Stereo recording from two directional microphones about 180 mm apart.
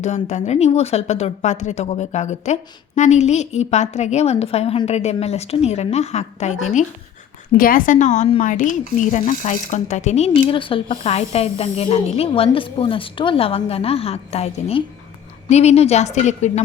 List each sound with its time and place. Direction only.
0.0 s speech: 40° left (ahead or behind)
7.5 s speech: 50° left (ahead or behind)